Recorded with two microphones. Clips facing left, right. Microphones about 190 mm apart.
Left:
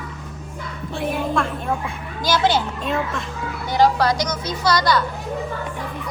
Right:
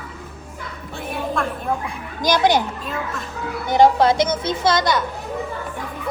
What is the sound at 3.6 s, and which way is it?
Speech, 20° right (ahead or behind).